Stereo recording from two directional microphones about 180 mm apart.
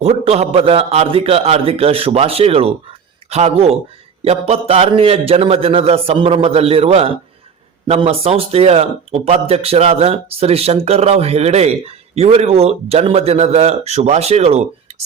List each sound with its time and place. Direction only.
0.0 s speech: 35° right (ahead or behind)